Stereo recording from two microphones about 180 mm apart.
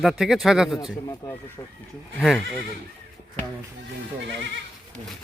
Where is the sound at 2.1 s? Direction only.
Centre (ahead or behind).